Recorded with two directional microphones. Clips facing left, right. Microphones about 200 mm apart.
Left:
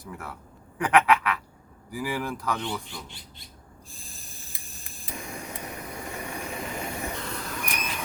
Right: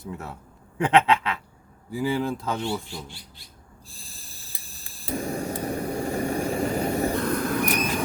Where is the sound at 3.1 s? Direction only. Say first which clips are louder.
Right 2 dB; 20° left (ahead or behind).